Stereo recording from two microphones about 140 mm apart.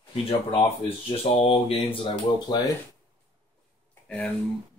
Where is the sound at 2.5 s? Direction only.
30° left (ahead or behind).